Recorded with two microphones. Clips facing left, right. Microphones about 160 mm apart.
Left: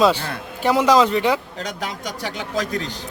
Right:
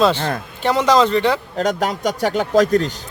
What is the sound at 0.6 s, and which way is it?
Speech, 10° left (ahead or behind).